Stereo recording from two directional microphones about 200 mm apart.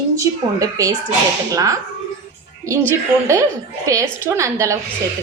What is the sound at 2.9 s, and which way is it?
A woman's voice, 15° right (ahead or behind).